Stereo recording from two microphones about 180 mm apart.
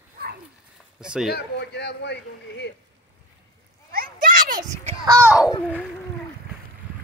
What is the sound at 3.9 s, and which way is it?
Children playing, 45° right (ahead or behind).